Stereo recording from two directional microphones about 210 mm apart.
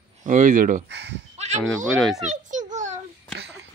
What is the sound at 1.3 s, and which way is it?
Sheep, 35° right (ahead or behind).